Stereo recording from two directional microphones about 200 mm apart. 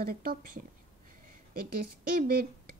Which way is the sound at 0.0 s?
45° right (ahead or behind).